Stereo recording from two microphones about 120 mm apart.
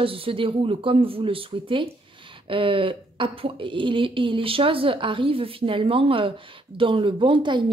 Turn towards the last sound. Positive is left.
turn(degrees=-40)  # may be behind; listen again after turning